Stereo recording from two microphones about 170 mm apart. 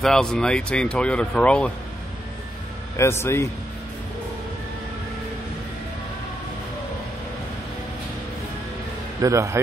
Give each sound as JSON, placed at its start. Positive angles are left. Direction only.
{"t": 0.0, "sound": "speech", "side_deg": 5}
{"t": 3.0, "sound": "a man's voice", "side_deg": 15}
{"t": 9.2, "sound": "a man's voice", "side_deg": -15}